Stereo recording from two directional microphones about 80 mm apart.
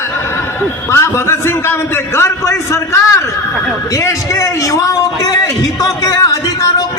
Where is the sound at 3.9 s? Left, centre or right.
Left.